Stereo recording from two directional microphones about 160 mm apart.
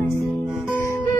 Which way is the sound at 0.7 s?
15° left (ahead or behind).